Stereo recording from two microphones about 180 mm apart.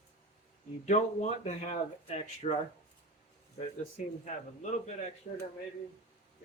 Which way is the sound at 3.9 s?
40° left (ahead or behind).